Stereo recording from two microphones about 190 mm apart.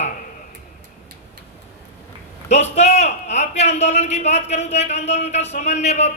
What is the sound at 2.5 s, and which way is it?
A man's voice, 35° left (ahead or behind).